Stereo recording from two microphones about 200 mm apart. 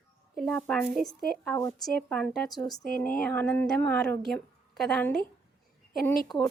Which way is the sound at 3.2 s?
5° left (ahead or behind).